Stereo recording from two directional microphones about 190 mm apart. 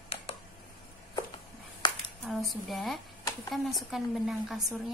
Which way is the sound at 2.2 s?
Centre (ahead or behind).